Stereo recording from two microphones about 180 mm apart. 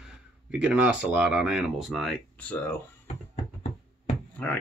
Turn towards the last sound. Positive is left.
turn(degrees=10)  # may be behind; listen again after turning